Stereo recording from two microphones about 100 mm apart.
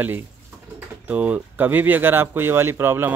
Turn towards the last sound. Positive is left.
turn(degrees=-20)  # may be behind; listen again after turning